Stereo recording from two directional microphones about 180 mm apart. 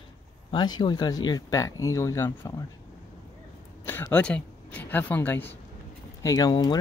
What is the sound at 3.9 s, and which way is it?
Speech, 10° left (ahead or behind).